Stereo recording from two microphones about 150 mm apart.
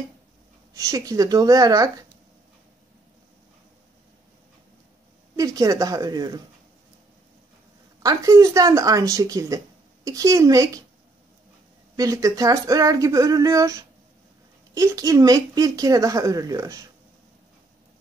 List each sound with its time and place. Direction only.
0.7 s a woman's voice: 20° right (ahead or behind)
5.3 s a woman's voice: 25° right (ahead or behind)
8.0 s a woman's voice: 20° right (ahead or behind)
12.0 s a woman's voice: 25° right (ahead or behind)